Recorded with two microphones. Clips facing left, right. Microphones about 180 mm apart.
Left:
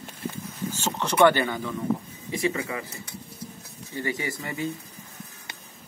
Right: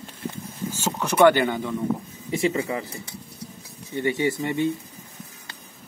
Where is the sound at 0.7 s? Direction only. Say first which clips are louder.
Right 2 dB; 10° right (ahead or behind).